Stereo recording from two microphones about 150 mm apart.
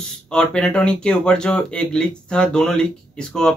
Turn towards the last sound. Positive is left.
turn(degrees=5)  # may be behind; listen again after turning